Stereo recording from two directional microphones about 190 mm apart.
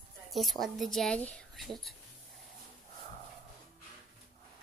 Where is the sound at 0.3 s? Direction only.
Centre (ahead or behind).